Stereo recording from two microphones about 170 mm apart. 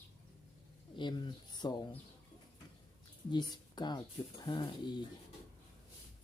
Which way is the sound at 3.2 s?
25° left (ahead or behind).